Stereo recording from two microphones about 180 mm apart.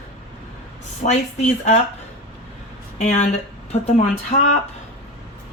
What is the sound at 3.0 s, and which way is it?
Speech, 40° left (ahead or behind).